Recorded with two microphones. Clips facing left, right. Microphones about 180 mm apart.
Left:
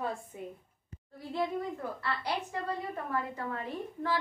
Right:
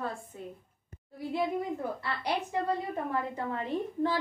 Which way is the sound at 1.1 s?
15° right (ahead or behind).